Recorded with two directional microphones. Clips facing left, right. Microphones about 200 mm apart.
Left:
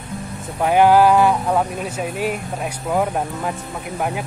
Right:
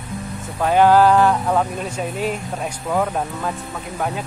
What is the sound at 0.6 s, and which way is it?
Speech, 10° left (ahead or behind).